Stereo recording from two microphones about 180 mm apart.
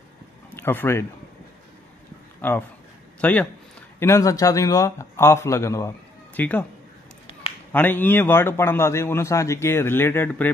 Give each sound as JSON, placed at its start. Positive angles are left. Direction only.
{"t": 0.5, "sound": "speech", "side_deg": 10}
{"t": 2.4, "sound": "a man's voice", "side_deg": 10}
{"t": 7.7, "sound": "a man's voice", "side_deg": 10}